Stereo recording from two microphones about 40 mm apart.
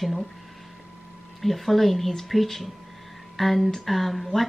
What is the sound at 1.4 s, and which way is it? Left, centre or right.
A woman's voice, centre.